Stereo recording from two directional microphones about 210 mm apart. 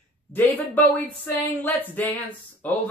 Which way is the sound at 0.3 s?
10° left (ahead or behind).